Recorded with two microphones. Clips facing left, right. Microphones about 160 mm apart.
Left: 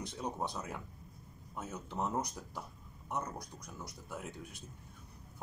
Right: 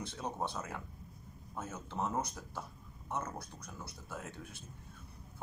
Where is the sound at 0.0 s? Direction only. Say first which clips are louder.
Even; 15° left (ahead or behind).